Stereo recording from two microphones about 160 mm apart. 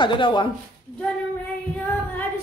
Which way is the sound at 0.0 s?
30° left (ahead or behind).